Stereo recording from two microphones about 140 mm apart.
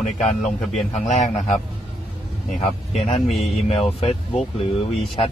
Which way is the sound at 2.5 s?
50° left (ahead or behind).